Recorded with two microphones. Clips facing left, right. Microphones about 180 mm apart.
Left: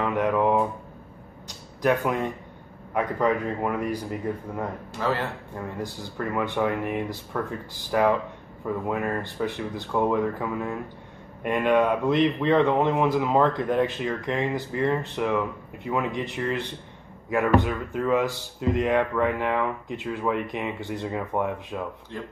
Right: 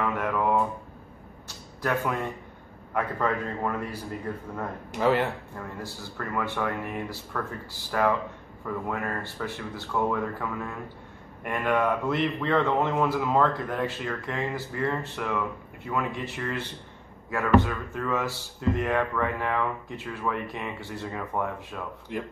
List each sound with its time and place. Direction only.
0.0 s a sound: 20° left (ahead or behind)
2.9 s speech: 15° left (ahead or behind)
4.9 s speech: 15° right (ahead or behind)
5.6 s a man's voice: 15° left (ahead or behind)
22.1 s speech: 15° right (ahead or behind)